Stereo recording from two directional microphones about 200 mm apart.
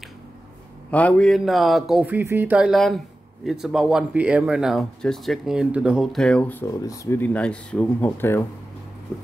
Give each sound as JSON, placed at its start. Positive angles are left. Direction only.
{"t": 0.9, "sound": "speech", "side_deg": 5}